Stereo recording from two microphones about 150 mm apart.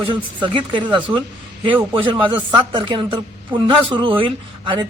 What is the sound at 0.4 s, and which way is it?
A woman's voice, 35° right (ahead or behind).